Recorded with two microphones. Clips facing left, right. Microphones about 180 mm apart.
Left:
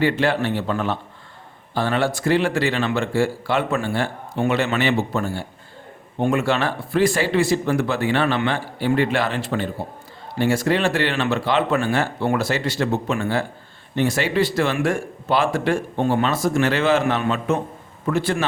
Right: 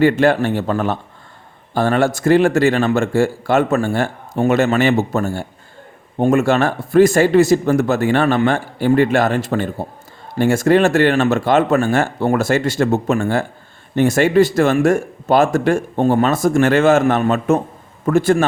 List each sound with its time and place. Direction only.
0.0 s a man's voice: 45° right (ahead or behind)